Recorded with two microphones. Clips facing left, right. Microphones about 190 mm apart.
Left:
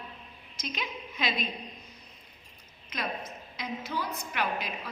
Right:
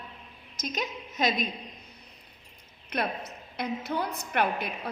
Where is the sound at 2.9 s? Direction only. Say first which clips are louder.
Right 4 dB; 65° right (ahead or behind).